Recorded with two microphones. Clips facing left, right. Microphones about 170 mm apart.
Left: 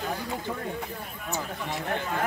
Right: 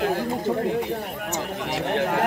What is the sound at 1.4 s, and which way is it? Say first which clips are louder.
Speech: right 5 dB; 90° right.